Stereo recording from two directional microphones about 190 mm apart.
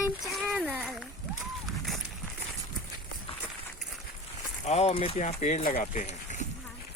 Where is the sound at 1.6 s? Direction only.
Centre (ahead or behind).